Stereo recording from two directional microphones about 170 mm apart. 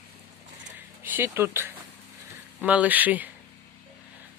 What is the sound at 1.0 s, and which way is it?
Speech, 10° right (ahead or behind).